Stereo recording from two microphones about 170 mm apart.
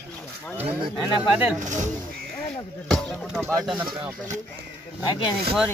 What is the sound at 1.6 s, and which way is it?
Speech, 45° right (ahead or behind).